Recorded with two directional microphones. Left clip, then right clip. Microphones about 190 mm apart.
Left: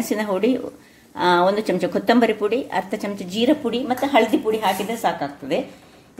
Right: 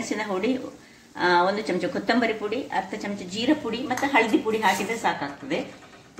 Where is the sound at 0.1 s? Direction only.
55° left (ahead or behind).